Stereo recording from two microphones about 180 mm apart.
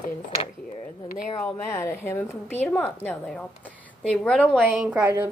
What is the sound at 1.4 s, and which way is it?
A woman's voice, 10° left (ahead or behind).